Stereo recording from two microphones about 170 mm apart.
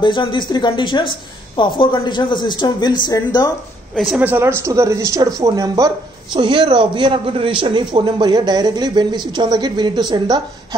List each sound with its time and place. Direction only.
0.0 s a woman's voice: 30° left (ahead or behind)
3.9 s a man's voice: centre (ahead or behind); by 10.8 s 25° right (ahead or behind)